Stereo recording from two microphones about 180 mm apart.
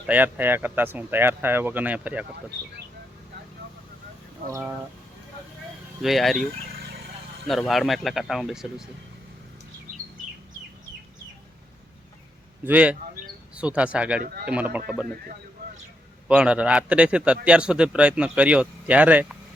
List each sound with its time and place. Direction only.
0.1 s a man's voice: 10° right (ahead or behind)
6.0 s speech: centre (ahead or behind)
7.4 s speech: centre (ahead or behind)
12.6 s a man's voice: 5° right (ahead or behind)
16.3 s a man's voice: 5° right (ahead or behind)